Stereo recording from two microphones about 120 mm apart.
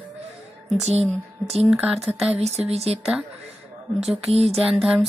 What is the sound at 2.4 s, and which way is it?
Speech, 60° right (ahead or behind).